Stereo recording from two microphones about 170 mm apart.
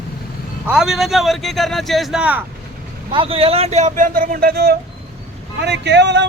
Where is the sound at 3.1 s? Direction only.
30° right (ahead or behind); by 4.7 s 70° right (ahead or behind).